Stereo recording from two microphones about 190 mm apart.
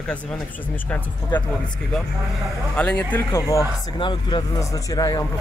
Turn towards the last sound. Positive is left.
turn(degrees=20)  # may be behind; listen again after turning